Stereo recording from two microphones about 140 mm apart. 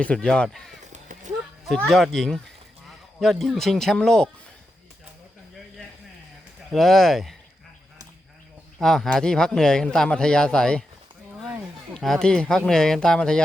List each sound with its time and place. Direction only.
0.0 s speech: 5° left (ahead or behind)
0.9 s a sound: 60° right (ahead or behind)
1.6 s speech: centre (ahead or behind)
6.7 s speech: centre (ahead or behind)
8.8 s speech: 5° left (ahead or behind)
11.9 s speech: 5° left (ahead or behind)